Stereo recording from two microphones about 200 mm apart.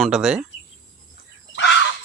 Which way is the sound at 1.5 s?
65° left (ahead or behind).